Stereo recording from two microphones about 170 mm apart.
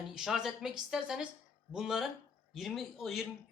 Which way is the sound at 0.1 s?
Centre (ahead or behind).